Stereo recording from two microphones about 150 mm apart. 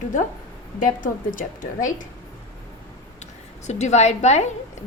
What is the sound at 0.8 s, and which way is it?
A woman's voice, 60° left (ahead or behind).